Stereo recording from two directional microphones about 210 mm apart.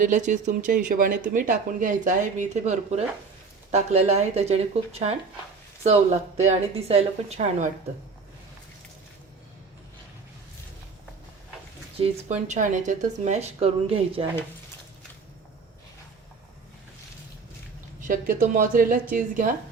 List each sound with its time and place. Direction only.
0.0 s speech: 35° right (ahead or behind)
11.9 s speech: 30° right (ahead or behind)
18.1 s speech: 40° right (ahead or behind)